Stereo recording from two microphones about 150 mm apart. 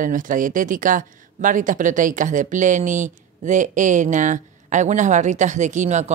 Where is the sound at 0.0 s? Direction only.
60° right (ahead or behind).